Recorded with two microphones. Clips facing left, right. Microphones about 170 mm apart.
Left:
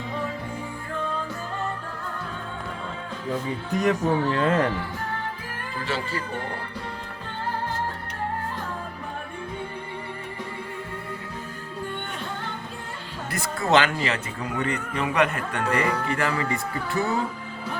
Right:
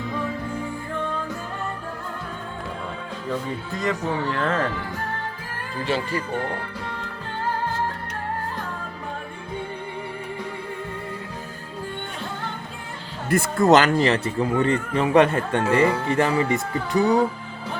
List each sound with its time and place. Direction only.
3.8 s speech: 15° left (ahead or behind)
5.8 s speech: 15° right (ahead or behind)
13.3 s speech: 45° right (ahead or behind); by 17.2 s 15° right (ahead or behind)